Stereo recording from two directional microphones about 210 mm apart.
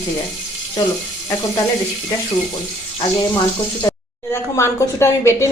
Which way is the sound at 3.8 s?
10° left (ahead or behind).